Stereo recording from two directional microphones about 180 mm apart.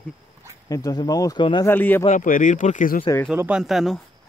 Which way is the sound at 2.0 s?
45° left (ahead or behind).